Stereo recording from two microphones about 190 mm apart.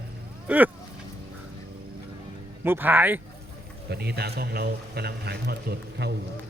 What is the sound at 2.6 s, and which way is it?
Speech, 10° right (ahead or behind).